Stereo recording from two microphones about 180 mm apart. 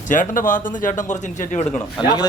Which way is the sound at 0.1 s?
45° left (ahead or behind).